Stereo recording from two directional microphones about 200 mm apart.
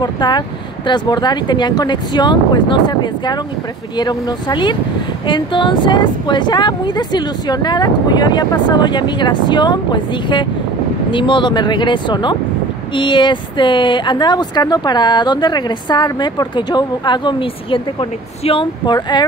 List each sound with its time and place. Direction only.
0.0 s speech: 20° left (ahead or behind)